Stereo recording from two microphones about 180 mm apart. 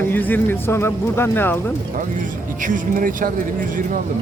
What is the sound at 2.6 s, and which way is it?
Speech, 45° right (ahead or behind).